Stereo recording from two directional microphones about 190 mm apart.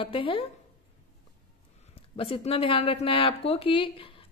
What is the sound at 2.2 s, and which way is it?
A woman's voice, 30° left (ahead or behind).